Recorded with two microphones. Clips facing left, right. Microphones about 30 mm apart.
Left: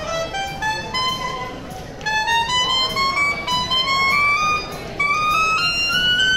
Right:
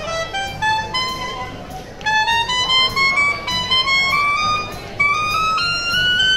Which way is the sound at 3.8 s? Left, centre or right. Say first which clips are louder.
Right 2 dB; centre.